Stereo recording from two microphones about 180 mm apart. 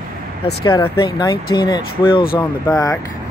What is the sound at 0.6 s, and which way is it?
Speech, 25° left (ahead or behind).